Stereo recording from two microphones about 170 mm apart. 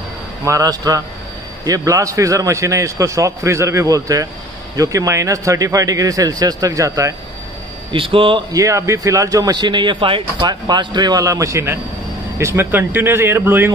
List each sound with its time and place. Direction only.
0.5 s speech: 20° right (ahead or behind)
7.9 s a man's voice: 30° right (ahead or behind)
8.5 s speech: 20° right (ahead or behind)